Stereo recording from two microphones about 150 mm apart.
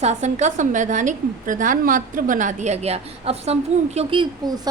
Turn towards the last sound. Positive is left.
turn(degrees=-35)  # may be behind; listen again after turning